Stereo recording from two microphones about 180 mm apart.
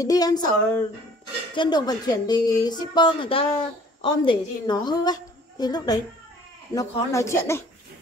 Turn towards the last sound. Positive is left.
turn(degrees=15)  # may be behind; listen again after turning